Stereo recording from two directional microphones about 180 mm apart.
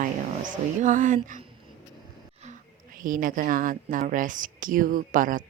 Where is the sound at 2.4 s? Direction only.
45° right (ahead or behind).